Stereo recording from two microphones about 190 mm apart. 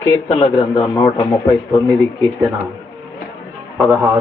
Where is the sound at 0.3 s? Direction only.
30° left (ahead or behind).